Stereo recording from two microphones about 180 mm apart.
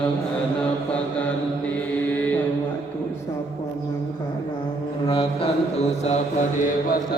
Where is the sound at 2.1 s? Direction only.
10° left (ahead or behind).